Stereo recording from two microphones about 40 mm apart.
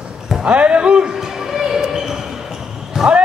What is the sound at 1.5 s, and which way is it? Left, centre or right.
Basketball bounce, centre.